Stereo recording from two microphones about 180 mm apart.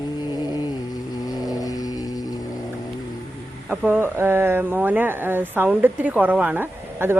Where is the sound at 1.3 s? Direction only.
20° left (ahead or behind).